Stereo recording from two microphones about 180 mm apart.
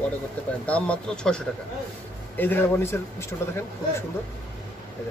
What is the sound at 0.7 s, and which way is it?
A man's voice, 5° left (ahead or behind).